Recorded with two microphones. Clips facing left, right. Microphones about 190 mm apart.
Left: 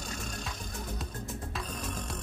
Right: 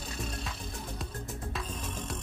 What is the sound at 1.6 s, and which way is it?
Music, 70° left (ahead or behind).